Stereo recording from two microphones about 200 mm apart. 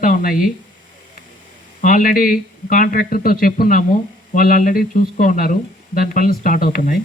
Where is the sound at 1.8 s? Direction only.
40° left (ahead or behind).